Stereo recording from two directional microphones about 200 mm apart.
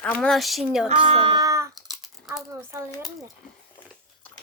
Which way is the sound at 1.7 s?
Centre (ahead or behind).